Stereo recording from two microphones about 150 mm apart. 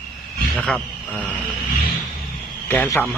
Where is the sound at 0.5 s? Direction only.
10° left (ahead or behind).